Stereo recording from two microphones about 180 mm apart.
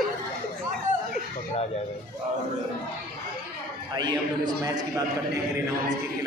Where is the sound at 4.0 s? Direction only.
25° right (ahead or behind).